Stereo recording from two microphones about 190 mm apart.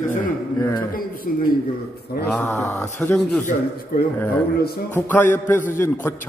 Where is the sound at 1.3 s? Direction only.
45° left (ahead or behind).